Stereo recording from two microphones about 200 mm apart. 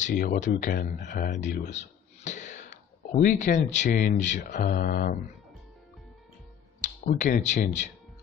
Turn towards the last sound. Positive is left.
turn(degrees=35)  # may be behind; listen again after turning